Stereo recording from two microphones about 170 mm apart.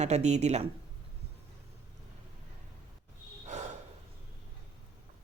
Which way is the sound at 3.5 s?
45° right (ahead or behind).